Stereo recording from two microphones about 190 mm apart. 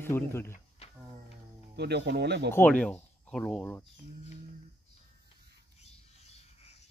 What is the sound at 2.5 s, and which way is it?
Speech, 10° left (ahead or behind).